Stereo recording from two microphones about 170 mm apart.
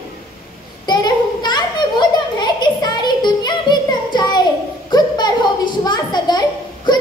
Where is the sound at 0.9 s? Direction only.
25° left (ahead or behind).